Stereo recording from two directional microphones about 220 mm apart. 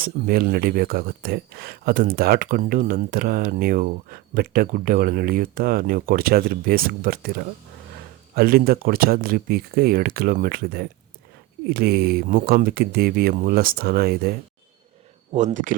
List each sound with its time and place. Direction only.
0.0 s speech: 40° right (ahead or behind)
15.3 s speech: 30° right (ahead or behind)